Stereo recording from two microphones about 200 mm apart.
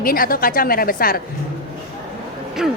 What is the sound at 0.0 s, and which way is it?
A woman's voice, 45° left (ahead or behind).